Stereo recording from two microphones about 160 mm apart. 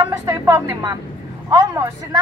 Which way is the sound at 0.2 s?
20° right (ahead or behind).